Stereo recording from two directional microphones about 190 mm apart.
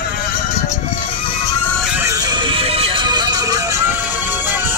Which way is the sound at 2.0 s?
20° right (ahead or behind).